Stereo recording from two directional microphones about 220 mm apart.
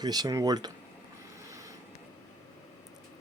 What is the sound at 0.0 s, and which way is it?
Speech, 20° right (ahead or behind).